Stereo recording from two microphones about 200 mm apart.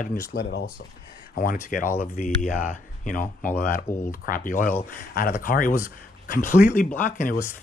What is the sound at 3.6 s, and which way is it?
Speech, 40° left (ahead or behind).